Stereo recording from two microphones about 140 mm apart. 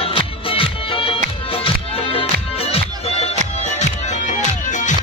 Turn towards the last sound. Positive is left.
turn(degrees=60)  # may be behind; listen again after turning